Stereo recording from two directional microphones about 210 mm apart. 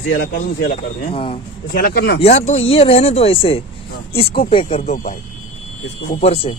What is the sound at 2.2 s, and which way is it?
Speech, 30° left (ahead or behind).